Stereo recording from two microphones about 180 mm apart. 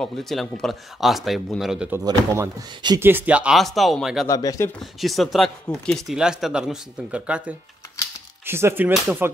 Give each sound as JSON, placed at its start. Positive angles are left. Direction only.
{"t": 0.0, "sound": "speech", "side_deg": 0}
{"t": 2.0, "sound": "speech", "side_deg": -20}
{"t": 3.1, "sound": "speech", "side_deg": -10}
{"t": 4.3, "sound": "speech", "side_deg": 20}
{"t": 5.0, "sound": "speech", "side_deg": 0}